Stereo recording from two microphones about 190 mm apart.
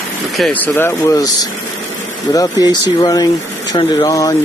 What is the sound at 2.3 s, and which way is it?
Speech, 20° left (ahead or behind).